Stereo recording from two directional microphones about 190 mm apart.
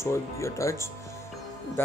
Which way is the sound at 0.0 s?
15° left (ahead or behind).